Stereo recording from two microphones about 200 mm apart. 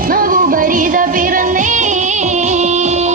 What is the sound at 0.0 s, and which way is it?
Music, 45° right (ahead or behind).